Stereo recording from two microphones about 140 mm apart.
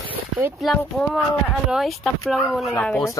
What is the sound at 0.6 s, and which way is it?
Speech, centre (ahead or behind).